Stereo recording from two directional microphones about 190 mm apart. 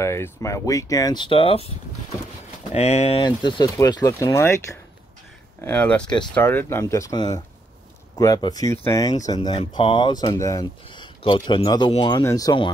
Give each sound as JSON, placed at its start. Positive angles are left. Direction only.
{"t": 0.0, "sound": "speech", "side_deg": 15}
{"t": 2.7, "sound": "speech", "side_deg": 35}
{"t": 3.3, "sound": "speech", "side_deg": 20}